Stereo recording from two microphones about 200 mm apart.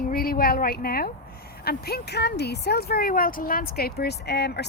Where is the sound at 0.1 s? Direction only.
45° left (ahead or behind).